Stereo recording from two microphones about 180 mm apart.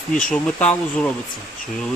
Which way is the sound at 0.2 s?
5° left (ahead or behind).